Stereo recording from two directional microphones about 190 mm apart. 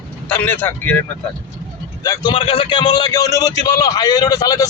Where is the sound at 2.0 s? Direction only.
20° left (ahead or behind).